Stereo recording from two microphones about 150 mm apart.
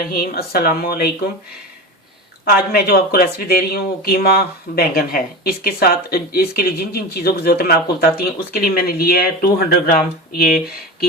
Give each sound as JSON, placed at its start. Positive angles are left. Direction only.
{"t": 0.0, "sound": "speech", "side_deg": 85}
{"t": 2.4, "sound": "speech", "side_deg": 90}